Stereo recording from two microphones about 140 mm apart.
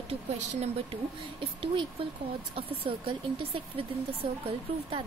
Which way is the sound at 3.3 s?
40° right (ahead or behind).